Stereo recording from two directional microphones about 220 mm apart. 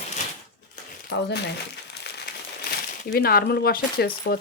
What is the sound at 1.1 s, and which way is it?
Speech, 50° left (ahead or behind).